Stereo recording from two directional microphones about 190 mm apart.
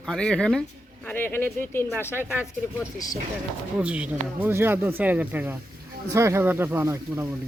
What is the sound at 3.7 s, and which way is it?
Speech, 5° right (ahead or behind).